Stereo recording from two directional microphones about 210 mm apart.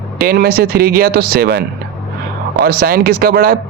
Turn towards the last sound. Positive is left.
turn(degrees=-45)  # may be behind; listen again after turning